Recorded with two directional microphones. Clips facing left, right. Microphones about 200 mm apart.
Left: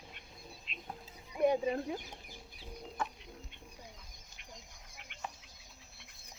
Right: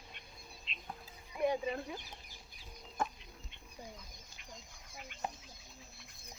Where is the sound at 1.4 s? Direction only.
25° left (ahead or behind).